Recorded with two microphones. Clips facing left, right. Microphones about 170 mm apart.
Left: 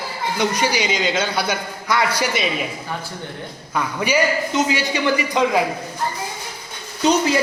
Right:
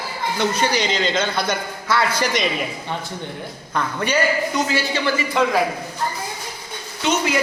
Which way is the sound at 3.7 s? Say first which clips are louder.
Left 1 dB; 10° left (ahead or behind).